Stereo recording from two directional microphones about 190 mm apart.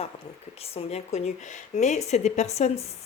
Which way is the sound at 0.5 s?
30° left (ahead or behind).